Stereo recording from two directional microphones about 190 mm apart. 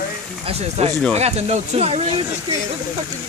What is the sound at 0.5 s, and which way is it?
Speech, 35° right (ahead or behind).